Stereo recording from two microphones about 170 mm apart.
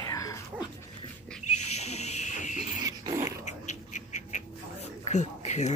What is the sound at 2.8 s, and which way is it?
Dog, 20° right (ahead or behind).